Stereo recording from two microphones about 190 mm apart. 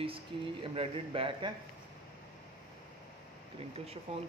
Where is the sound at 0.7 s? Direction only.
30° right (ahead or behind).